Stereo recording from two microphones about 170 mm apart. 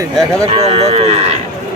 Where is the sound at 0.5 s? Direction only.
40° right (ahead or behind).